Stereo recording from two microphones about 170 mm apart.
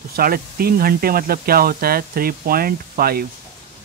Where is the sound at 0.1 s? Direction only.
60° right (ahead or behind).